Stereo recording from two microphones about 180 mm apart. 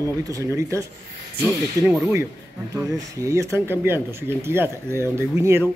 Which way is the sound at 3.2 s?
15° right (ahead or behind).